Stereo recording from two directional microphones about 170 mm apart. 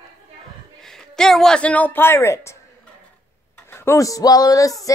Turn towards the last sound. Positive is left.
turn(degrees=20)  # may be behind; listen again after turning